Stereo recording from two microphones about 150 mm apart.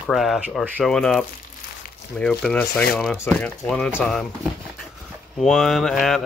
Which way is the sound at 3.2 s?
10° left (ahead or behind).